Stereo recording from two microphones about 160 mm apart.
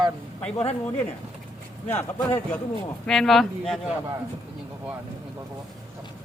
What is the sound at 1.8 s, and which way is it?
Speech, 15° left (ahead or behind).